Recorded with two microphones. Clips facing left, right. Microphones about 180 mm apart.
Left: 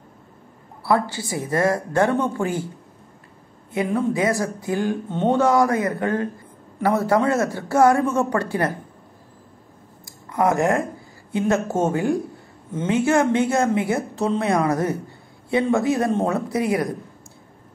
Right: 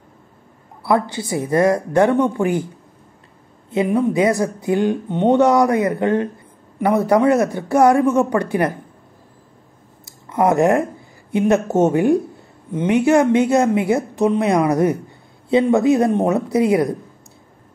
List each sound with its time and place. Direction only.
0.8 s a woman's voice: 20° right (ahead or behind)
3.7 s a woman's voice: 20° right (ahead or behind)
10.0 s a sound: 20° right (ahead or behind)
11.3 s a woman's voice: 20° right (ahead or behind)